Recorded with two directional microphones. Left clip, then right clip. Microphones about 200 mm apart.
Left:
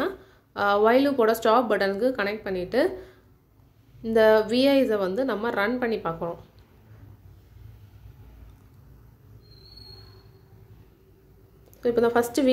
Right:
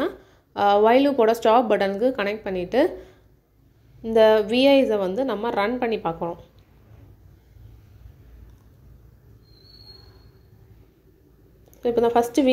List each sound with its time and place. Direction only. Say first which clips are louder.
0.0 s a woman's voice: right 2 dB; 10° right (ahead or behind)
11.8 s a woman's voice: right 2 dB; 5° right (ahead or behind)